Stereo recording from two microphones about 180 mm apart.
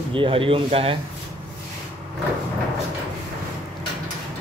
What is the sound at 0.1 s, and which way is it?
Speech, 30° right (ahead or behind).